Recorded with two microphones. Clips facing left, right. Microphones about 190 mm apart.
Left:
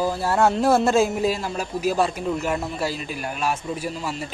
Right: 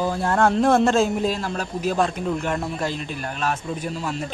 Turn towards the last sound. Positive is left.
turn(degrees=0)  # may be behind; listen again after turning